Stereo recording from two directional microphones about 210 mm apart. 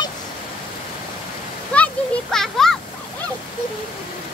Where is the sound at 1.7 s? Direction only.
5° left (ahead or behind).